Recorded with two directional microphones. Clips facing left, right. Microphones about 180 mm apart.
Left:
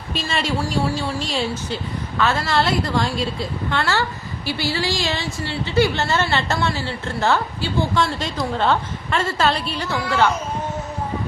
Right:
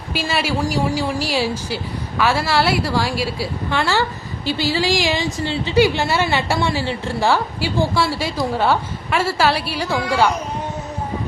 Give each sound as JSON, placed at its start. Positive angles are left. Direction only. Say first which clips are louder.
{"t": 0.1, "sound": "a woman's voice", "louder": "right 2 dB", "side_deg": -10}